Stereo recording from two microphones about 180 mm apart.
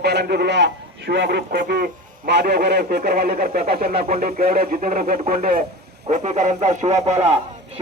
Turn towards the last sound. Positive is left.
turn(degrees=-35)  # may be behind; listen again after turning